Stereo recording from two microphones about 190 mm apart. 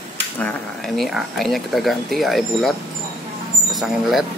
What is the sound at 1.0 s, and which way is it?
Speech, centre (ahead or behind).